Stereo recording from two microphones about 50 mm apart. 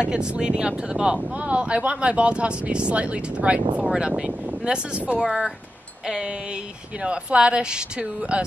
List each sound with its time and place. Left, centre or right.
0.0 s speech: centre
7.0 s speech: right